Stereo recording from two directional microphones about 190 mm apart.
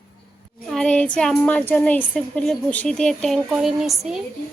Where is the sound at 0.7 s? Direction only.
5° left (ahead or behind).